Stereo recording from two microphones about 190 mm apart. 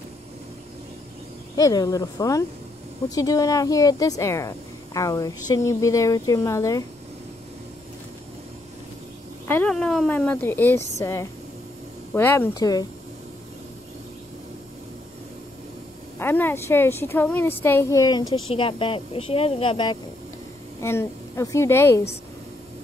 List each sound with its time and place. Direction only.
1.6 s a woman's voice: 20° left (ahead or behind)
9.5 s a woman's voice: 5° left (ahead or behind)
16.2 s a woman's voice: 10° left (ahead or behind)
20.8 s a woman's voice: 15° left (ahead or behind)